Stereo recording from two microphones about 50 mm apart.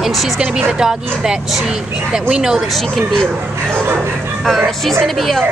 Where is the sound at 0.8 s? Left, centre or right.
Centre.